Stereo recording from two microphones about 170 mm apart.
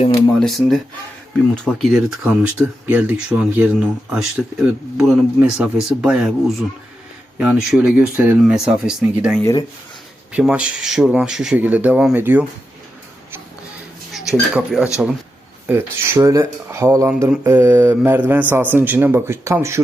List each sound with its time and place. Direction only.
0.3 s speech: centre (ahead or behind)
7.3 s speech: 5° right (ahead or behind)
9.4 s speech: 20° left (ahead or behind)
10.3 s speech: 5° right (ahead or behind)
14.1 s speech: centre (ahead or behind)
15.6 s speech: 15° right (ahead or behind)